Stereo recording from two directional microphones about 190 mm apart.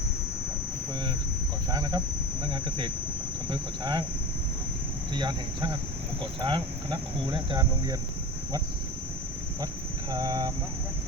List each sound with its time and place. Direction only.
1.7 s speech: 20° right (ahead or behind)
5.1 s speech: 25° right (ahead or behind)
10.1 s speech: 20° right (ahead or behind)